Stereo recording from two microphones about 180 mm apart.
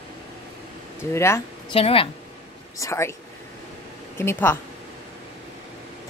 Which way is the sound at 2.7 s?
15° left (ahead or behind).